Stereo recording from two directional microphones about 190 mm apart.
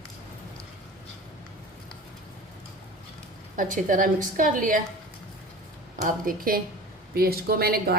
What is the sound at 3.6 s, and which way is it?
A woman's voice, 45° right (ahead or behind).